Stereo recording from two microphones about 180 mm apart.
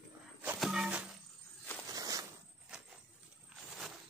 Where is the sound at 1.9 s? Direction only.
20° right (ahead or behind).